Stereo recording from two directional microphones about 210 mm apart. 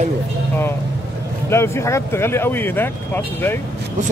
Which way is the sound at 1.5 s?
10° left (ahead or behind).